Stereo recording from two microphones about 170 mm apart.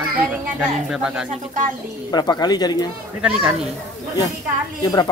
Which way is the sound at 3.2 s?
5° right (ahead or behind).